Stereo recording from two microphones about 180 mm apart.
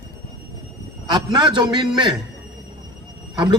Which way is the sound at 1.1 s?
25° right (ahead or behind).